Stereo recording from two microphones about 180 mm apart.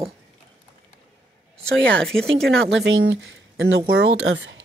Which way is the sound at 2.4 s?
75° right (ahead or behind).